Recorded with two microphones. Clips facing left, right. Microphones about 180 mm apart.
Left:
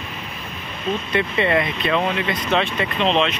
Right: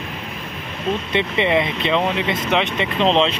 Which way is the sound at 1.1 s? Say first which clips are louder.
Right 1 dB; 20° right (ahead or behind).